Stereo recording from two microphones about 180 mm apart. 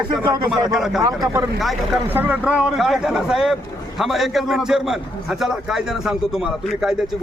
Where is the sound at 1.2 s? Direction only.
20° right (ahead or behind).